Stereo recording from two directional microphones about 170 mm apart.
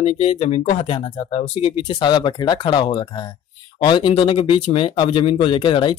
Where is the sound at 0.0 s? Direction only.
35° left (ahead or behind).